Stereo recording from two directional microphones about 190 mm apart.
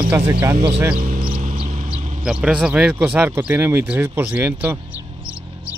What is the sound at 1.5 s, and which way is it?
Vehicle, 30° right (ahead or behind).